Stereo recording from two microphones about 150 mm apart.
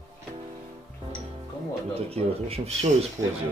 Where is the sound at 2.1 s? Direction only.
40° right (ahead or behind).